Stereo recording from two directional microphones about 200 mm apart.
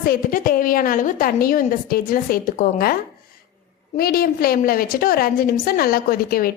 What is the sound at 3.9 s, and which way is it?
A woman's voice, 50° left (ahead or behind).